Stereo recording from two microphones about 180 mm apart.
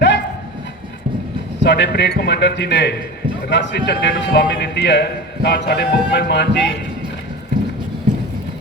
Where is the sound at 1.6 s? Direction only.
70° left (ahead or behind).